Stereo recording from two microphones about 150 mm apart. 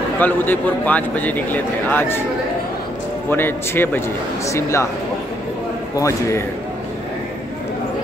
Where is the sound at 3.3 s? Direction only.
15° left (ahead or behind).